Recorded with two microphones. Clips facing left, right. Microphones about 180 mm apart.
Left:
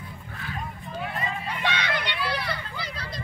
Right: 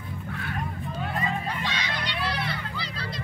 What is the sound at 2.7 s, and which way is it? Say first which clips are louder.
Children playing: even; 50° left (ahead or behind).